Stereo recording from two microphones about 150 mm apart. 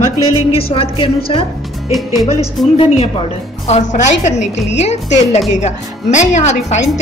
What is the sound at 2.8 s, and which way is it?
A woman's voice, 40° left (ahead or behind).